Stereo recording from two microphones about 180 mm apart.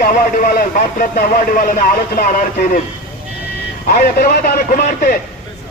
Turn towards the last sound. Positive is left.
turn(degrees=50)  # may be behind; listen again after turning